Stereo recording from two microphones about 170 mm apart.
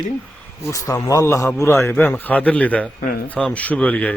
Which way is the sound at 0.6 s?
20° left (ahead or behind).